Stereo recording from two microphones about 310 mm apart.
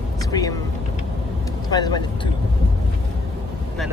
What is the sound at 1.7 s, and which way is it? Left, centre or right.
Speech, centre.